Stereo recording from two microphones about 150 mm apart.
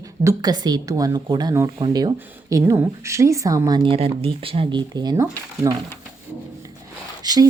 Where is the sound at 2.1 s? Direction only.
15° right (ahead or behind).